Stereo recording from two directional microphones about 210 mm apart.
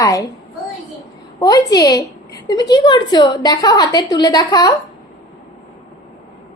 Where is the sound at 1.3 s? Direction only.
20° left (ahead or behind).